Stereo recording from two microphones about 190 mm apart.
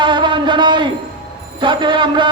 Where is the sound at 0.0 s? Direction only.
25° right (ahead or behind).